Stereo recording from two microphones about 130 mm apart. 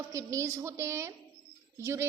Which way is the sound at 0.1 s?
25° right (ahead or behind).